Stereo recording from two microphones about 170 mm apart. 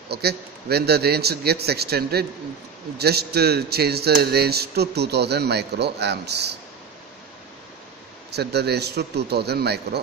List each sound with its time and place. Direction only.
0.1 s speech: 70° right (ahead or behind)
8.3 s speech: 75° right (ahead or behind)